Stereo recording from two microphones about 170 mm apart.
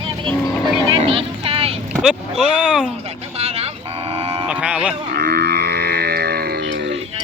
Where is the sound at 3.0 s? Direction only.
35° right (ahead or behind).